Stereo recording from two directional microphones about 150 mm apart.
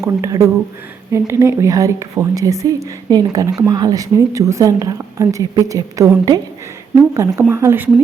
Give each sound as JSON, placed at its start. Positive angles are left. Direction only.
{"t": 0.0, "sound": "speech", "side_deg": -20}